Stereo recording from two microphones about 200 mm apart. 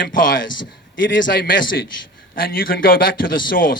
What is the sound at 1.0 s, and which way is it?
Speech, 65° left (ahead or behind).